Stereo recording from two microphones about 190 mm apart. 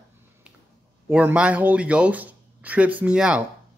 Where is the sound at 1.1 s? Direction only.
5° right (ahead or behind).